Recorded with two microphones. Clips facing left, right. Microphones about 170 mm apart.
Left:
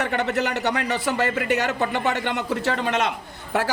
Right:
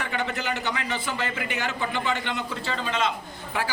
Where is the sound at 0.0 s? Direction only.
65° left (ahead or behind).